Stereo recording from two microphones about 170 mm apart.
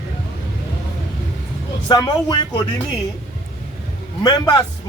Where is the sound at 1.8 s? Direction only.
25° left (ahead or behind).